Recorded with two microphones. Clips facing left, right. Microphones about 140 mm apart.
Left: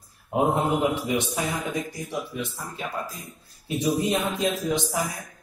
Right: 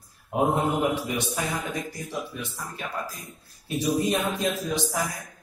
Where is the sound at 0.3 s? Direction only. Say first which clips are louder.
Left 1 dB; 20° left (ahead or behind).